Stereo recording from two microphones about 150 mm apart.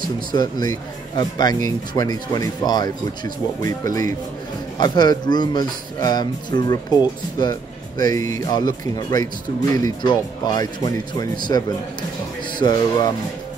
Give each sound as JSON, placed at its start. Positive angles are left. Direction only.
{"t": 0.3, "sound": "speech", "side_deg": 25}